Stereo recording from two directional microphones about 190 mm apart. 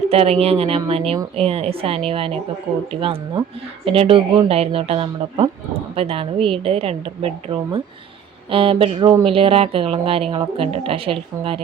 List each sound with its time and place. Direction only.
0.1 s speech: 30° right (ahead or behind)